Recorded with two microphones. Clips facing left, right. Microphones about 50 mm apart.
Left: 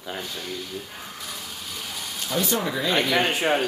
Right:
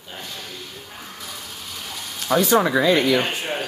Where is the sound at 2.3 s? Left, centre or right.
Right.